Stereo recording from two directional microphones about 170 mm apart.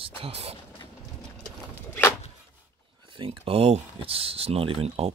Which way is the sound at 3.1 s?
30° right (ahead or behind).